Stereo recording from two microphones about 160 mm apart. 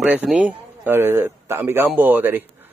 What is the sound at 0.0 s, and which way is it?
A man's voice, 5° right (ahead or behind).